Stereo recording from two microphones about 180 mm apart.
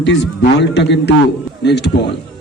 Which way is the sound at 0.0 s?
85° left.